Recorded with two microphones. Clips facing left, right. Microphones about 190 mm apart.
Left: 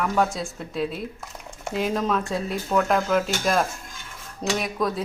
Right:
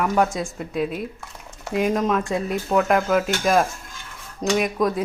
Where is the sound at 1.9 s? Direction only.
Centre (ahead or behind).